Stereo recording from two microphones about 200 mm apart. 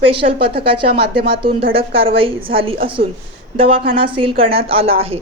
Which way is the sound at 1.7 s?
30° right (ahead or behind).